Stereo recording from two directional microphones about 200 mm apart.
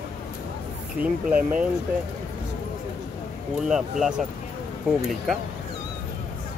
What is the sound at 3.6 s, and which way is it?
Speech, centre (ahead or behind).